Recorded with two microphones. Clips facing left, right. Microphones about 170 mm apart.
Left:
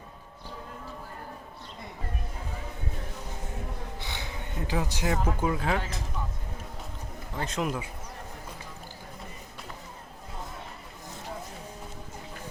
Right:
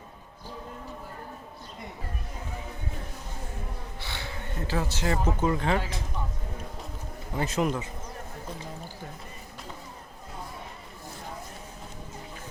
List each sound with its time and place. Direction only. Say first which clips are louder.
4.0 s a sound: right 1 dB; 15° left (ahead or behind)
5.4 s speech: right 2 dB; 5° left (ahead or behind)
7.3 s speech: right 4 dB; 5° right (ahead or behind)